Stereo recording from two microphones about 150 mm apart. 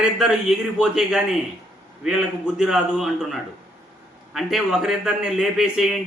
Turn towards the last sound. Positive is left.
turn(degrees=0)  # may be behind; listen again after turning